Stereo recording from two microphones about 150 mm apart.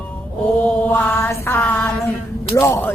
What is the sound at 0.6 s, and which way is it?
A woman's voice, 15° left (ahead or behind).